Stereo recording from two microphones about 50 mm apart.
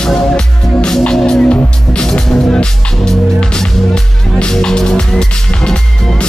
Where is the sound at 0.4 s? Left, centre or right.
Centre.